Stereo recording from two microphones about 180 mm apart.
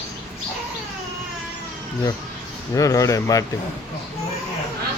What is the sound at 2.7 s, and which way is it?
Speech, 20° left (ahead or behind).